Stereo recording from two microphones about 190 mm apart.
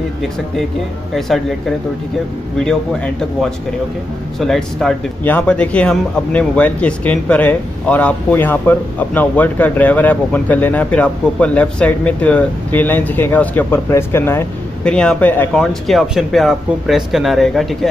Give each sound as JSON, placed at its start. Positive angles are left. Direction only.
{"t": 2.6, "sound": "a man's voice", "side_deg": 5}